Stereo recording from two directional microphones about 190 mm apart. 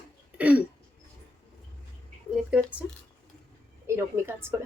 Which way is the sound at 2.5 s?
5° right (ahead or behind).